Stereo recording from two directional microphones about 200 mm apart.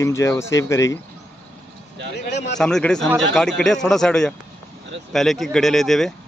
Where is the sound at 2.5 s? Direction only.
5° left (ahead or behind).